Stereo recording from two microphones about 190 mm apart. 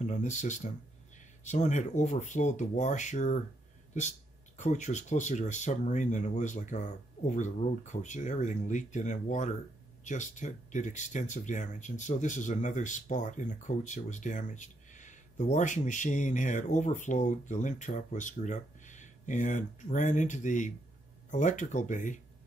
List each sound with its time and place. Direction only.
0.0 s speech: 40° left (ahead or behind)
4.6 s speech: 40° left (ahead or behind)